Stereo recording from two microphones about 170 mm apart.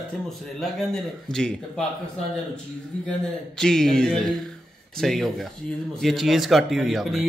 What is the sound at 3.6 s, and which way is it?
A man's voice, 5° left (ahead or behind).